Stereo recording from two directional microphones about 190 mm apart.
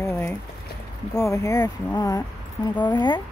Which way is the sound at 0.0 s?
15° left (ahead or behind).